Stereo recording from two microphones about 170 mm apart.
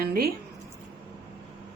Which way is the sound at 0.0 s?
65° right (ahead or behind).